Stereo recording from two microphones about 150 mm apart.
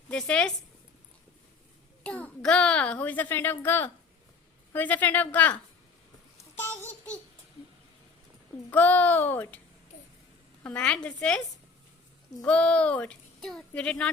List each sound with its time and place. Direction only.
0.1 s speech: 5° left (ahead or behind)
2.0 s a child's voice: 10° left (ahead or behind)
6.3 s a sound: 15° left (ahead or behind)
8.7 s speech: 10° left (ahead or behind)
10.6 s speech: 10° left (ahead or behind)
12.5 s speech: 10° left (ahead or behind)